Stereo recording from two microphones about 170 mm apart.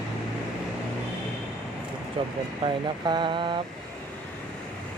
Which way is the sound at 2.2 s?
30° right (ahead or behind).